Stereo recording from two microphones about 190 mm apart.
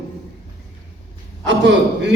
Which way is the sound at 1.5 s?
70° right (ahead or behind).